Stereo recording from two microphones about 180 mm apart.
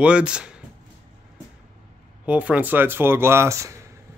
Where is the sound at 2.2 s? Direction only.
10° right (ahead or behind).